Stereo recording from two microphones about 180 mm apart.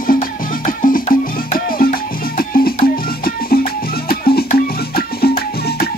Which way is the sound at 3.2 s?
55° left (ahead or behind).